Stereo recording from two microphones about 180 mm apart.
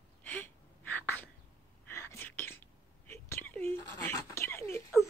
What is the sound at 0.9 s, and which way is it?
Sneeze, 10° left (ahead or behind).